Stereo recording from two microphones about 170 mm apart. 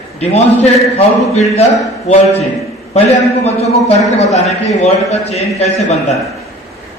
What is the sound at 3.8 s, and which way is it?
A man's voice, 40° left (ahead or behind).